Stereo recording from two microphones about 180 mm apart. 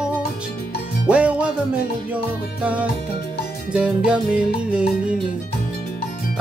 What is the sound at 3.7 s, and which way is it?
Music, 5° right (ahead or behind).